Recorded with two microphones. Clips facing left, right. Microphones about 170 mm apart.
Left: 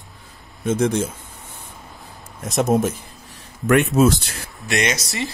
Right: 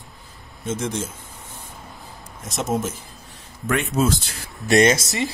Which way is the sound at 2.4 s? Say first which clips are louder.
Left 6 dB; 60° left (ahead or behind).